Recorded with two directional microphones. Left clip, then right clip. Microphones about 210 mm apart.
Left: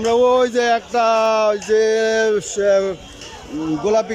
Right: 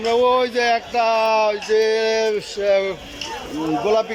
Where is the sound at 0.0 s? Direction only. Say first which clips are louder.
Left 2 dB; 10° left (ahead or behind).